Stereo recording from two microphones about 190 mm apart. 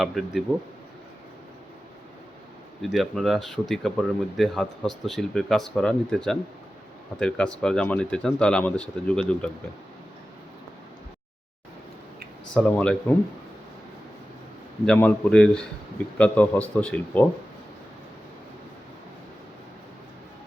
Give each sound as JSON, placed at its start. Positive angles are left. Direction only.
{"t": 0.0, "sound": "speech", "side_deg": 0}
{"t": 2.9, "sound": "speech", "side_deg": 0}
{"t": 12.5, "sound": "speech", "side_deg": 5}
{"t": 14.8, "sound": "a man's voice", "side_deg": 10}